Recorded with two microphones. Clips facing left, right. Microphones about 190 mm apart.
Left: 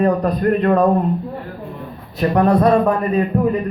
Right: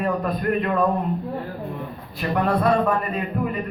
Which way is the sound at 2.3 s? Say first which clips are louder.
Left 6 dB; 40° left (ahead or behind).